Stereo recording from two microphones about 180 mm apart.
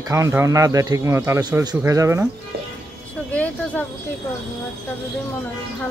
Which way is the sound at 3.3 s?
10° left (ahead or behind).